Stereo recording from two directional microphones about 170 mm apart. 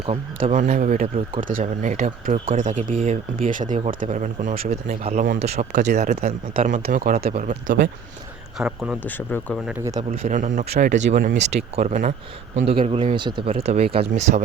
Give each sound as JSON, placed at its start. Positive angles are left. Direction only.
{"t": 0.5, "sound": "speech", "side_deg": -50}
{"t": 8.5, "sound": "speech", "side_deg": -5}
{"t": 9.0, "sound": "speech", "side_deg": 10}
{"t": 10.1, "sound": "speech", "side_deg": -50}
{"t": 10.7, "sound": "speech", "side_deg": -70}
{"t": 10.9, "sound": "speech", "side_deg": -45}
{"t": 12.6, "sound": "speech", "side_deg": -35}